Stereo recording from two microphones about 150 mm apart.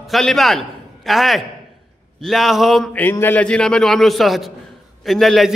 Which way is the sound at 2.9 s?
15° left (ahead or behind).